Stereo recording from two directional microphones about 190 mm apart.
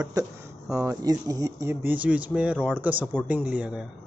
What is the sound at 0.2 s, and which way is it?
Speech, 20° right (ahead or behind).